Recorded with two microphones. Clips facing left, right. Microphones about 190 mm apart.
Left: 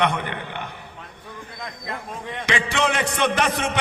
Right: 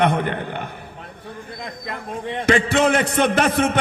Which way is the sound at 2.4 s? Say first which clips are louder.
Right 6 dB; 50° right (ahead or behind).